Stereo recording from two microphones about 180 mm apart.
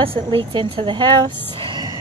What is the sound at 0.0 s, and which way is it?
A woman's voice, 30° right (ahead or behind).